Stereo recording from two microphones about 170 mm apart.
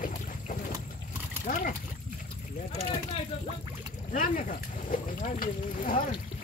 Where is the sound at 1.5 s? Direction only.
55° left (ahead or behind).